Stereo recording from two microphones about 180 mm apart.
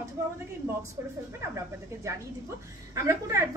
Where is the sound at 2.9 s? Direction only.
15° right (ahead or behind).